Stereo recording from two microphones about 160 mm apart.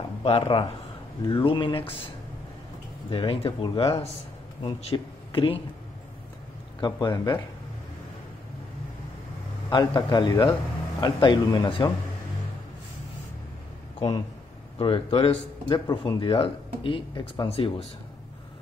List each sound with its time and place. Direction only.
0.2 s speech: 35° left (ahead or behind)
3.1 s speech: 30° left (ahead or behind)
6.8 s speech: 30° left (ahead or behind)
9.7 s speech: 25° left (ahead or behind)
13.9 s speech: 25° left (ahead or behind)